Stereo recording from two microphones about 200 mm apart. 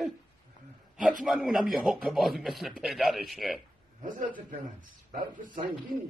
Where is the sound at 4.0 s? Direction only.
40° right (ahead or behind).